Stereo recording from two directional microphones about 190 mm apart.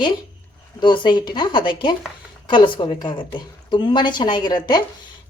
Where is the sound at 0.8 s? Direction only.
25° left (ahead or behind).